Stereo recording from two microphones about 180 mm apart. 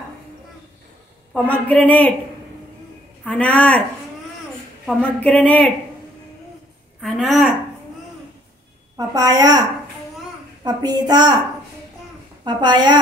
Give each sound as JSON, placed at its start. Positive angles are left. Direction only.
{"t": 1.3, "sound": "a woman's voice", "side_deg": 10}
{"t": 3.3, "sound": "a woman's voice", "side_deg": 10}
{"t": 4.8, "sound": "a woman's voice", "side_deg": 5}
{"t": 7.0, "sound": "a woman's voice", "side_deg": 0}
{"t": 8.9, "sound": "a woman's voice", "side_deg": -20}
{"t": 12.4, "sound": "a woman's voice", "side_deg": -25}